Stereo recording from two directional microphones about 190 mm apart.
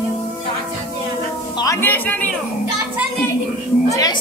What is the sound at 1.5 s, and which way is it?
Music, 15° left (ahead or behind).